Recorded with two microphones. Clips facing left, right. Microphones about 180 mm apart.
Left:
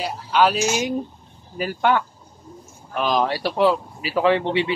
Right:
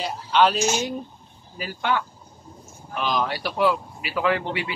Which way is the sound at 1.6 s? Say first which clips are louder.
Left 5 dB; 50° left (ahead or behind).